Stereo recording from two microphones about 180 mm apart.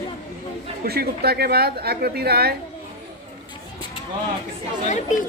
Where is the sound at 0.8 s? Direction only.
60° right (ahead or behind).